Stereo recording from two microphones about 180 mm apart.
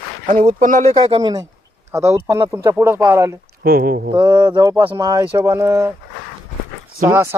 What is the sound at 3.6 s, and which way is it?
Speech, 60° right (ahead or behind).